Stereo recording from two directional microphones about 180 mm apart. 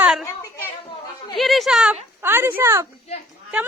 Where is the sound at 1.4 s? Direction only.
Centre (ahead or behind).